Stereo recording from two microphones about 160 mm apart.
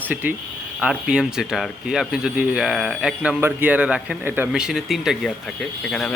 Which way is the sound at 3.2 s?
10° right (ahead or behind).